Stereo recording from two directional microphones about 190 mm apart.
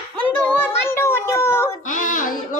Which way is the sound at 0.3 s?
10° left (ahead or behind).